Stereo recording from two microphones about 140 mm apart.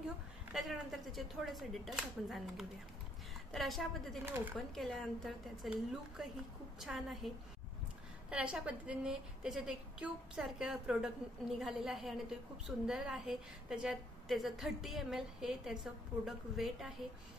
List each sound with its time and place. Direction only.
0.5 s a woman's voice: centre (ahead or behind)
4.2 s speech: 15° right (ahead or behind)
4.6 s a woman's voice: centre (ahead or behind)
8.3 s a woman's voice: 5° right (ahead or behind)